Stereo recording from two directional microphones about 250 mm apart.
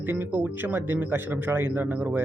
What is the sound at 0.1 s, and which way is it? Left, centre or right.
Speech, centre.